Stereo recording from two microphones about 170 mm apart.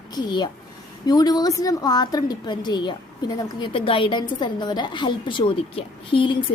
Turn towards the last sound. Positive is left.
turn(degrees=30)  # may be behind; listen again after turning